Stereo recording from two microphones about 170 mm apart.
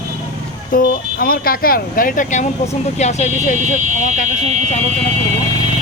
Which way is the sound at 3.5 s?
45° right (ahead or behind).